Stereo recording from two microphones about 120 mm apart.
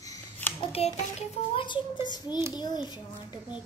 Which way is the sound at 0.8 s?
60° left (ahead or behind).